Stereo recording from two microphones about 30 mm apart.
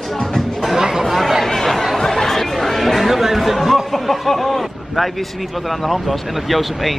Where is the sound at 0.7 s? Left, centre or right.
Centre.